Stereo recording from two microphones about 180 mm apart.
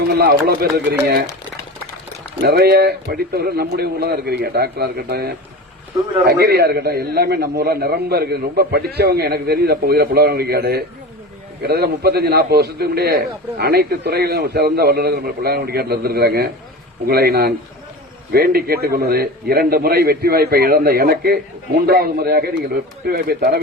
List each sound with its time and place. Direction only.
0.1 s a man's voice: 60° right (ahead or behind)
2.4 s a man's voice: 65° right (ahead or behind)